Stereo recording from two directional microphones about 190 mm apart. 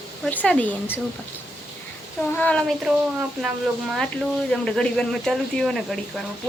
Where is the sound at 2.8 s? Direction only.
5° right (ahead or behind).